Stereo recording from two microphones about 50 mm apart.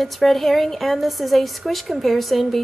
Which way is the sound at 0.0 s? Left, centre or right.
Centre.